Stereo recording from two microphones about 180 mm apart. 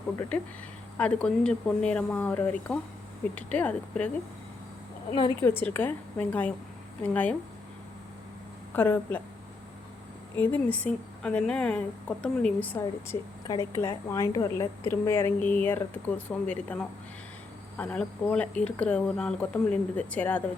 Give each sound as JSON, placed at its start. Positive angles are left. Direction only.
{"t": 0.9, "sound": "a woman's voice", "side_deg": 5}
{"t": 5.4, "sound": "a woman's voice", "side_deg": 15}
{"t": 8.7, "sound": "a woman's voice", "side_deg": 10}
{"t": 10.3, "sound": "a woman's voice", "side_deg": 10}